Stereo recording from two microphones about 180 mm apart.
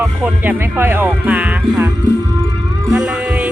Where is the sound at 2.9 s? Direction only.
5° right (ahead or behind).